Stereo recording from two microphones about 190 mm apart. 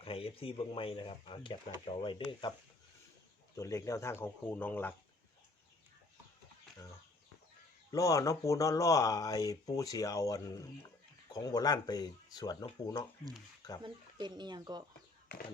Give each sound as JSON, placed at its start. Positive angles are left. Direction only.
{"t": 0.0, "sound": "speech", "side_deg": 30}
{"t": 3.5, "sound": "speech", "side_deg": 15}
{"t": 7.9, "sound": "speech", "side_deg": 15}
{"t": 13.8, "sound": "speech", "side_deg": -25}